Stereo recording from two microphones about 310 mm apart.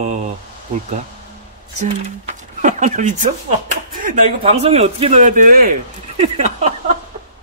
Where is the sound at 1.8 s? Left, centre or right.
Right.